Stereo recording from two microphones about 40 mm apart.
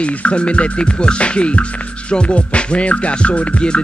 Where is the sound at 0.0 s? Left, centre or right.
Left.